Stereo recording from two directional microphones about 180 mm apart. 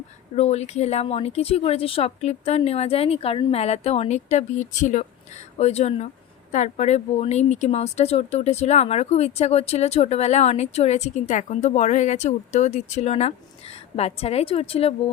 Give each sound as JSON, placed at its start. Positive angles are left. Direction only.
{"t": 0.3, "sound": "speech", "side_deg": 35}